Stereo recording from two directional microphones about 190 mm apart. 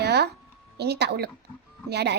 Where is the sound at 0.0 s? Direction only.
60° right (ahead or behind).